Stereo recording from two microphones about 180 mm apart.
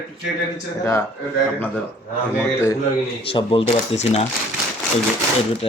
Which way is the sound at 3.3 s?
30° left (ahead or behind).